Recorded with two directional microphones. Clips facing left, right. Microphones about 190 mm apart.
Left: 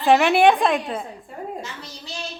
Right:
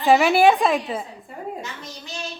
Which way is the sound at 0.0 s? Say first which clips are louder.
Even; centre (ahead or behind).